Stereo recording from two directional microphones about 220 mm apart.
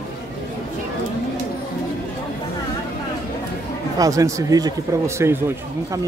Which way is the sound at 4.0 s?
15° right (ahead or behind).